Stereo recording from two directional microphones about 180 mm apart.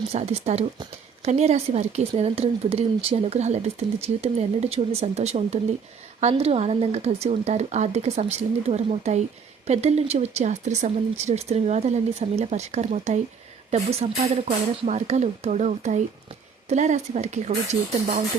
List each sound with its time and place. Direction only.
0.1 s speech: 35° right (ahead or behind)